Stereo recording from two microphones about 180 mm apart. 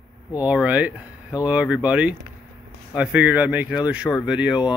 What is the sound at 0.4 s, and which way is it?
Speech, 5° right (ahead or behind).